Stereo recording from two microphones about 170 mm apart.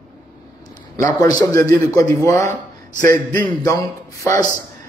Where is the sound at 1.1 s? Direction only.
20° left (ahead or behind).